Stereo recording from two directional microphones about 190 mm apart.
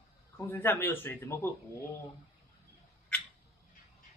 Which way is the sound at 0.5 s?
10° left (ahead or behind).